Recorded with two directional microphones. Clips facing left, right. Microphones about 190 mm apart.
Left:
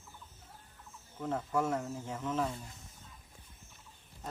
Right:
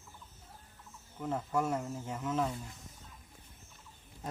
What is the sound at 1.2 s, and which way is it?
Speech, 5° right (ahead or behind).